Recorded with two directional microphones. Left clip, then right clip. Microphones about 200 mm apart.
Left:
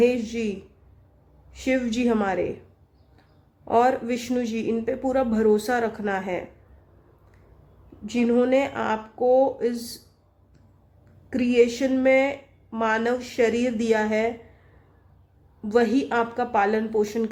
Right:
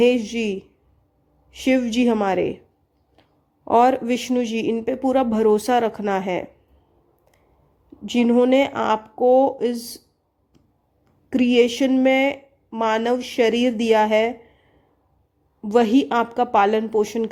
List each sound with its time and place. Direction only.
0.0 s a woman's voice: 35° right (ahead or behind)
1.5 s a woman's voice: 35° right (ahead or behind)
3.6 s a woman's voice: 35° right (ahead or behind)
8.0 s a woman's voice: 35° right (ahead or behind)
11.3 s a woman's voice: 40° right (ahead or behind)
15.7 s a woman's voice: 35° right (ahead or behind)